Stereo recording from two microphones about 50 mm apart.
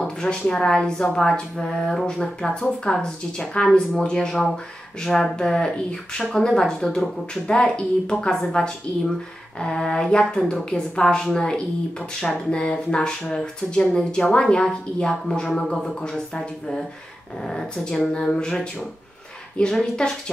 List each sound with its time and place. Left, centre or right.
0.0 s speech: centre